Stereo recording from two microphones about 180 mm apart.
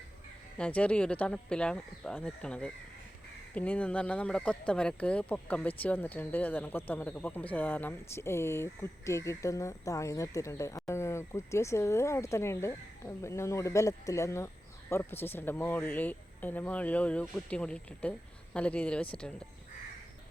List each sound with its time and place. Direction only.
0.5 s speech: 5° left (ahead or behind)